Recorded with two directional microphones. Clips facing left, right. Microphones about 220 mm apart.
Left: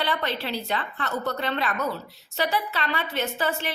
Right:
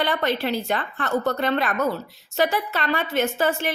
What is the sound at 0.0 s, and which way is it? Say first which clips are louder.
A woman's voice: right 5 dB; 45° right (ahead or behind).